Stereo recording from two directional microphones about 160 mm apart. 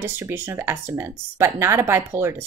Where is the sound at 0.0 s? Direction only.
15° right (ahead or behind).